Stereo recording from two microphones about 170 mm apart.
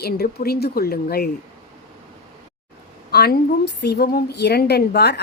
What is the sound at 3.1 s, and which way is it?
A woman's voice, 70° left (ahead or behind).